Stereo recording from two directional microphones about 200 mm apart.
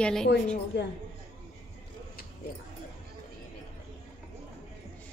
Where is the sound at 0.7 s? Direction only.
60° left (ahead or behind).